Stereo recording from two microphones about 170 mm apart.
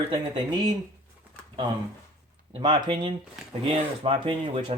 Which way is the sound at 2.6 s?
30° right (ahead or behind).